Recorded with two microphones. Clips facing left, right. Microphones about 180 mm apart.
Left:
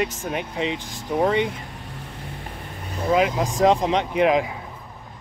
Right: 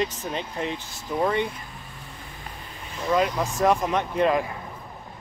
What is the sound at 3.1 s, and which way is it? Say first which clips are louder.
Speech: left 3 dB; 15° left (ahead or behind).